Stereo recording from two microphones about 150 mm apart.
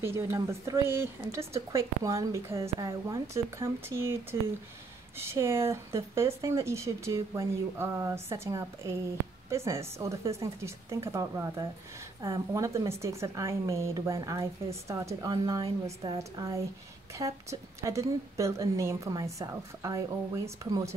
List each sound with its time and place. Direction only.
0.0 s a woman's voice: 15° right (ahead or behind); by 16.2 s 35° right (ahead or behind)
16.2 s speech: 20° right (ahead or behind)